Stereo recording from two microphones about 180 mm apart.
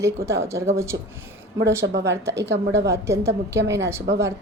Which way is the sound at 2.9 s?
15° right (ahead or behind).